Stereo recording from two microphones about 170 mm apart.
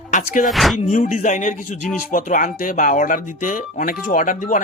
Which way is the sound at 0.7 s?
45° left (ahead or behind).